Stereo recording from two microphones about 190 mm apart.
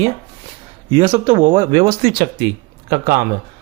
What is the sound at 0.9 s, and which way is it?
Speech, 30° right (ahead or behind).